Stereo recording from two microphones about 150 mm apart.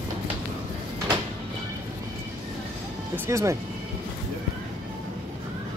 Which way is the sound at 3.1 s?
15° right (ahead or behind).